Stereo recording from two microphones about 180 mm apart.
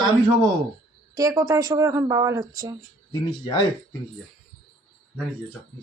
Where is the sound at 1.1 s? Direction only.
15° right (ahead or behind).